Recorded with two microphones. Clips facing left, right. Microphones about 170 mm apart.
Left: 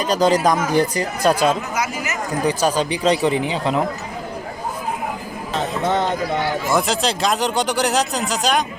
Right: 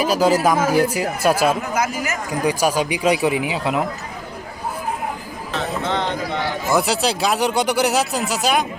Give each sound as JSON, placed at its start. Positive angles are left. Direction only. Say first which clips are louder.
{"t": 0.0, "sound": "speech", "louder": "even", "side_deg": -5}
{"t": 1.7, "sound": "speech", "louder": "right 2 dB", "side_deg": -50}
{"t": 2.4, "sound": "speech", "louder": "even", "side_deg": -10}
{"t": 6.7, "sound": "speech", "louder": "right 3 dB", "side_deg": -5}